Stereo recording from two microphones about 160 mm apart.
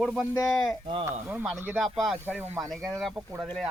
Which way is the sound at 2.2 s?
15° right (ahead or behind).